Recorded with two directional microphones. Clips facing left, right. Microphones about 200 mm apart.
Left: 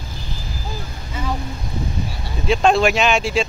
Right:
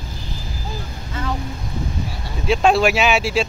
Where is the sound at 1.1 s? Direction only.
10° left (ahead or behind).